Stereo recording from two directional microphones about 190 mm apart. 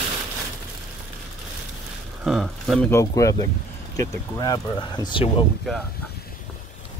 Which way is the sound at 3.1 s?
15° left (ahead or behind).